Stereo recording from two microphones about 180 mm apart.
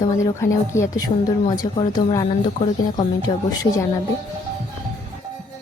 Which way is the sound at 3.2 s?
20° left (ahead or behind).